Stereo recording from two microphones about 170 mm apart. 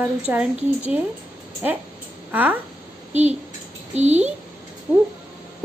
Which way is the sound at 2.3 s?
10° right (ahead or behind).